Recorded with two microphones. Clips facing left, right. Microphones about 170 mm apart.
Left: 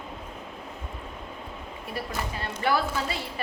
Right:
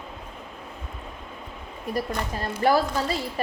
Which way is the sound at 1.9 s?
40° right (ahead or behind).